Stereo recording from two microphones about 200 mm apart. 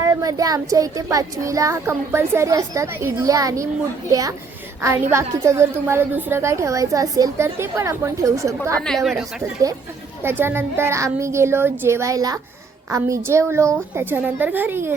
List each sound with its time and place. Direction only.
0.0 s a child's voice: 15° right (ahead or behind)
8.8 s speech: centre (ahead or behind)
9.4 s a child's voice: 15° right (ahead or behind)